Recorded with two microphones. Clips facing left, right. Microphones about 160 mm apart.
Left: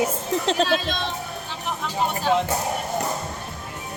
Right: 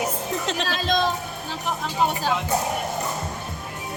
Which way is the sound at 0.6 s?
40° right (ahead or behind).